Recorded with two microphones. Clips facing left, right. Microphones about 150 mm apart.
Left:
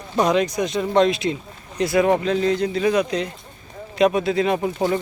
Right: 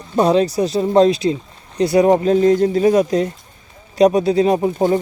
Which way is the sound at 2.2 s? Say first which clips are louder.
Right 7 dB; 40° right (ahead or behind).